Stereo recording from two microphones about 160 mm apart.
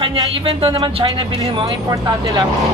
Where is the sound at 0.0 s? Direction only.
30° right (ahead or behind).